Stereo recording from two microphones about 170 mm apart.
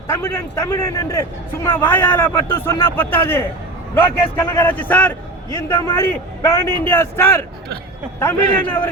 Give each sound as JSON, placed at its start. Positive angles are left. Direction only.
{"t": 0.1, "sound": "a man's voice", "side_deg": 15}